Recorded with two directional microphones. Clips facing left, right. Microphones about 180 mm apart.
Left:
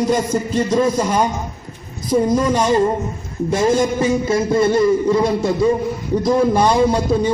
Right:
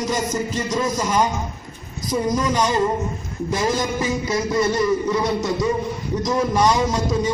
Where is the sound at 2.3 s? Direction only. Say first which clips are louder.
Left 5 dB; 30° left (ahead or behind).